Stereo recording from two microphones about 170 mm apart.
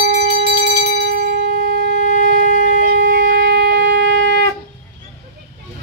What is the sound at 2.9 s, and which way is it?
Shofar, 75° right (ahead or behind).